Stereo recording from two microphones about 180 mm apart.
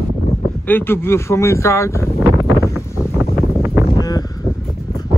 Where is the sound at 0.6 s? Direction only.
10° left (ahead or behind).